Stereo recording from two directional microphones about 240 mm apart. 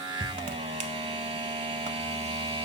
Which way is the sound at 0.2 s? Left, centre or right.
Centre.